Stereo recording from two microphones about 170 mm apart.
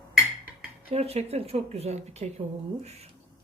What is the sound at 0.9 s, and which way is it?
Speech, 40° right (ahead or behind).